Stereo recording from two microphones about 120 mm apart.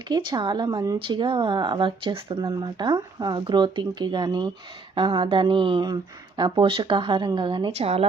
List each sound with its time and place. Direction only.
0.1 s speech: 40° right (ahead or behind)
7.8 s speech: 60° right (ahead or behind)